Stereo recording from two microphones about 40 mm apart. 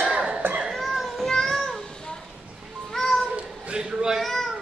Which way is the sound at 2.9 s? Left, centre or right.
Centre.